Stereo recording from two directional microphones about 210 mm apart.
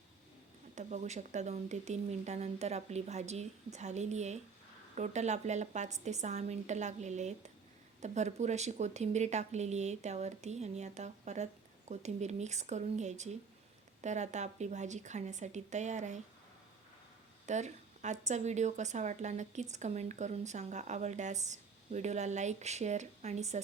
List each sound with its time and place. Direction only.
0.8 s speech: 35° right (ahead or behind)
17.4 s a sound: 35° right (ahead or behind)
18.3 s speech: 35° right (ahead or behind)